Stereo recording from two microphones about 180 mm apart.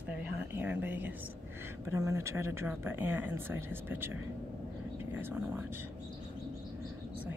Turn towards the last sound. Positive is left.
turn(degrees=-10)  # may be behind; listen again after turning